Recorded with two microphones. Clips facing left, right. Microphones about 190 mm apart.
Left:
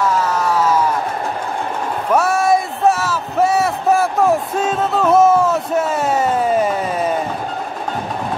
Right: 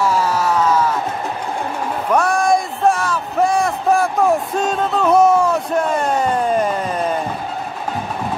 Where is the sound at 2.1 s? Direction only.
5° left (ahead or behind).